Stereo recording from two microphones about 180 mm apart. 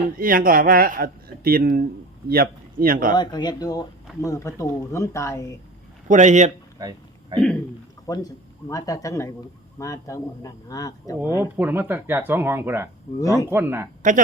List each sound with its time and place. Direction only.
0.2 s a man's voice: 50° right (ahead or behind)
3.1 s speech: 25° left (ahead or behind)
6.1 s speech: 40° right (ahead or behind)
6.7 s a sound: 20° right (ahead or behind)
8.0 s speech: 20° left (ahead or behind)
11.3 s speech: 10° right (ahead or behind)
14.0 s a man's voice: 45° right (ahead or behind)